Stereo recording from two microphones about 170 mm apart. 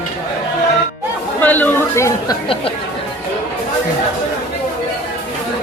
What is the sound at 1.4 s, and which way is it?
Speech, 10° left (ahead or behind).